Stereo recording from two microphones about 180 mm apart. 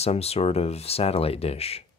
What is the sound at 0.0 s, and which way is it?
Speech, 35° left (ahead or behind).